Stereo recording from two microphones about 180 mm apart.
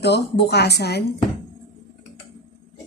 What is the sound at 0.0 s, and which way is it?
A woman's voice, 65° left (ahead or behind).